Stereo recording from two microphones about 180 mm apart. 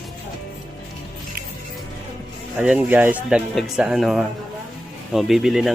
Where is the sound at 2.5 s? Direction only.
5° right (ahead or behind).